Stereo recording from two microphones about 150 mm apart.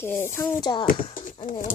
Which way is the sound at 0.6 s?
30° left (ahead or behind).